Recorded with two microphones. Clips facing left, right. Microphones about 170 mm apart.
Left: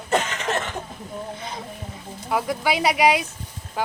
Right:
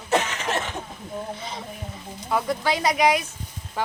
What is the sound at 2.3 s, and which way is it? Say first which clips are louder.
Speech: left 1 dB; 5° left (ahead or behind).